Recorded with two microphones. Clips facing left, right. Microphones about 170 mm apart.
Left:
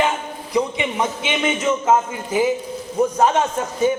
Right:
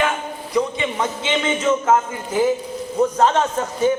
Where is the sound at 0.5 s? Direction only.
15° left (ahead or behind).